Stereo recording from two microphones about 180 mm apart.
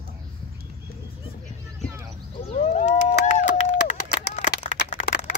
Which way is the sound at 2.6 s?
40° left (ahead or behind).